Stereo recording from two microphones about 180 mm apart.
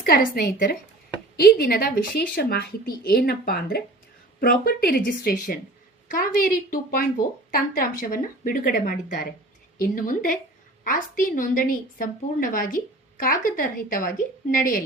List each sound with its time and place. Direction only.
0.0 s a woman's voice: 55° left (ahead or behind)